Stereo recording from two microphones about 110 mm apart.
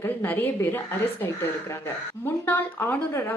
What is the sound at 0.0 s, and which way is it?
Speech, 20° left (ahead or behind).